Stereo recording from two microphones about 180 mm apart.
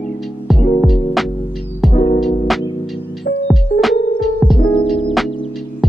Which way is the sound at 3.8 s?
Centre (ahead or behind).